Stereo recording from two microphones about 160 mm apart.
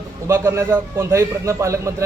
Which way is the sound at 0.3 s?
15° right (ahead or behind).